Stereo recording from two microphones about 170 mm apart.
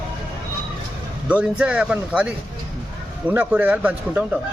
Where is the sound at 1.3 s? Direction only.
5° right (ahead or behind).